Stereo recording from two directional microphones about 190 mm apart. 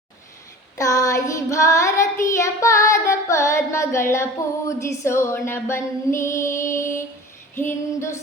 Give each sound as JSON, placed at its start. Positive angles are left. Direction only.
{"t": 0.8, "sound": "child singing", "side_deg": 15}
{"t": 4.8, "sound": "female singing", "side_deg": 15}